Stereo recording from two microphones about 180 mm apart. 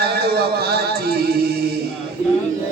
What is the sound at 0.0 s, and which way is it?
Music, 60° right (ahead or behind).